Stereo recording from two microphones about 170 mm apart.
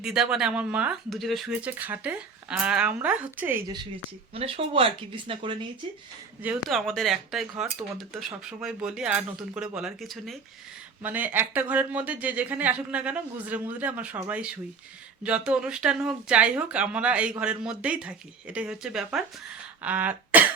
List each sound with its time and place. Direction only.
0.0 s speech: 5° right (ahead or behind)
4.4 s speech: 35° right (ahead or behind)
6.4 s speech: 5° right (ahead or behind)